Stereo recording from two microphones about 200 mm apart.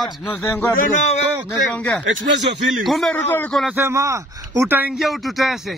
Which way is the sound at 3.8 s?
15° right (ahead or behind).